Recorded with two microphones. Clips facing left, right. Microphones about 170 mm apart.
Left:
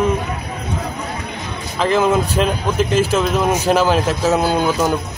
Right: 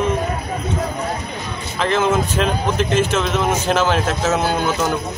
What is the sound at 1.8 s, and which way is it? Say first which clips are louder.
Speech: left 3 dB; 5° left (ahead or behind).